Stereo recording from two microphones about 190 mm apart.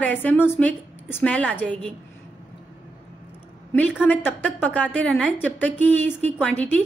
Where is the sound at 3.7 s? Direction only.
10° left (ahead or behind).